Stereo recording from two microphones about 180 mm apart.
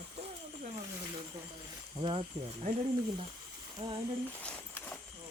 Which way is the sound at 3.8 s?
35° right (ahead or behind).